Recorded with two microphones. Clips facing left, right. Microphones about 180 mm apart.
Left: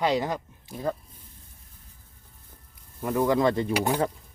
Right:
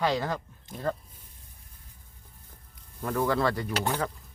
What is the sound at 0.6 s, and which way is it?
Speech, 5° left (ahead or behind).